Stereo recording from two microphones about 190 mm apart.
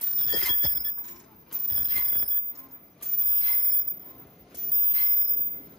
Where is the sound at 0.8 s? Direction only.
20° right (ahead or behind).